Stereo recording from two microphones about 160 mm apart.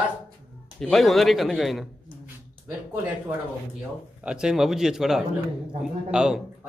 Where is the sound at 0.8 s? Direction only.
Centre (ahead or behind).